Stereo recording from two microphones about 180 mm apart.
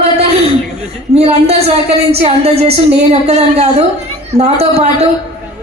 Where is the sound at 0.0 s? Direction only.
35° right (ahead or behind).